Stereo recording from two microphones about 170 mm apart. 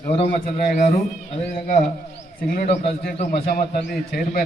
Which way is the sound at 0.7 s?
55° left (ahead or behind).